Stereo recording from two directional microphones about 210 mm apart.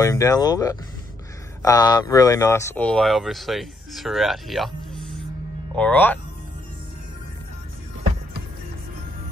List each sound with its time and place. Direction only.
0.0 s speech: 15° left (ahead or behind)